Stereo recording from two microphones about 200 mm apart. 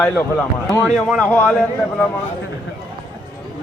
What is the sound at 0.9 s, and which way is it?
A man's voice, centre (ahead or behind).